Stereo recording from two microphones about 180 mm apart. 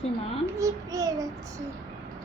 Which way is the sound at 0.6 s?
20° right (ahead or behind).